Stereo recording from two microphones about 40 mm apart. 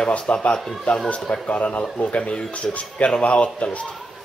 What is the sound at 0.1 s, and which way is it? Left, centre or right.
Speech, left.